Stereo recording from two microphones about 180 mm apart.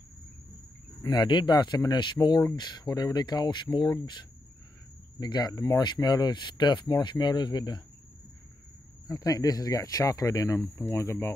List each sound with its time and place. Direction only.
1.0 s speech: 25° left (ahead or behind)
9.0 s speech: 20° left (ahead or behind)